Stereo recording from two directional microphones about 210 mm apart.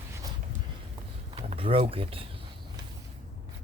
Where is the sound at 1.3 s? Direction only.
30° right (ahead or behind).